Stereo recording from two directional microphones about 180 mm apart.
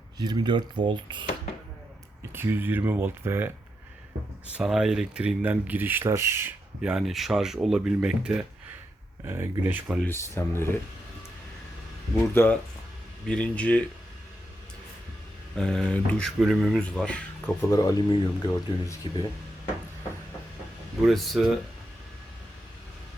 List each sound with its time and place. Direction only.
0.2 s speech: 25° right (ahead or behind)
2.3 s speech: 10° right (ahead or behind)
4.5 s speech: 5° right (ahead or behind)
10.1 s speech: 15° left (ahead or behind)
12.3 s speech: 10° left (ahead or behind)
15.5 s speech: 5° left (ahead or behind)
17.7 s speech: 20° left (ahead or behind)
21.0 s speech: centre (ahead or behind)